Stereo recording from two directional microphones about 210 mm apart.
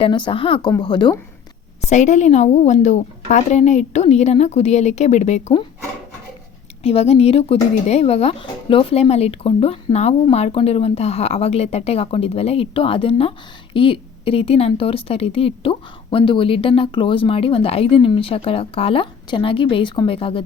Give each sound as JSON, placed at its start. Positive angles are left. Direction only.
{"t": 0.0, "sound": "a woman's voice", "side_deg": 25}
{"t": 1.9, "sound": "a woman's voice", "side_deg": 35}
{"t": 6.8, "sound": "a woman's voice", "side_deg": 30}